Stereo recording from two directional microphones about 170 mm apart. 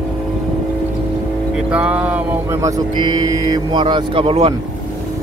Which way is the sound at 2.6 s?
25° right (ahead or behind).